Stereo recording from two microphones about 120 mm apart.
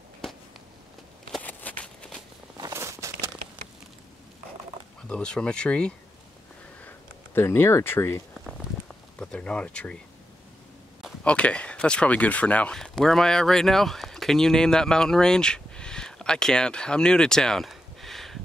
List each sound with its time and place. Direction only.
1.4 s a sound: 15° left (ahead or behind)
2.5 s a sound: 30° right (ahead or behind)
5.0 s speech: 5° left (ahead or behind)
7.3 s speech: 20° left (ahead or behind)
9.2 s speech: 10° left (ahead or behind)
11.2 s speech: 10° left (ahead or behind)